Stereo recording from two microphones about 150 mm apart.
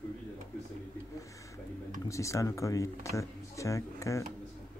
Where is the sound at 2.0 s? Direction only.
20° left (ahead or behind).